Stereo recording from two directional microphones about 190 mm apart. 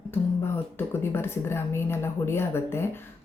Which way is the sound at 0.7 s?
10° left (ahead or behind).